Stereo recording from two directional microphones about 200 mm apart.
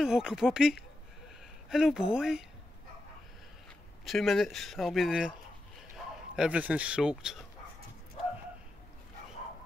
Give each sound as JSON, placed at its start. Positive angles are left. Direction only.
{"t": 0.0, "sound": "speech", "side_deg": -5}
{"t": 4.0, "sound": "speech", "side_deg": 0}